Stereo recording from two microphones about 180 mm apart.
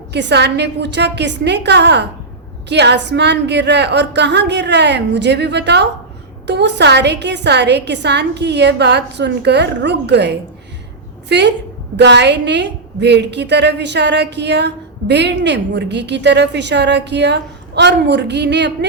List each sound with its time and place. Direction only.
0.1 s a woman's voice: 70° right (ahead or behind)